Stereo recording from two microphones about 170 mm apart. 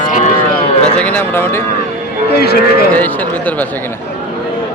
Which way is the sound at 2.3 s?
70° left (ahead or behind).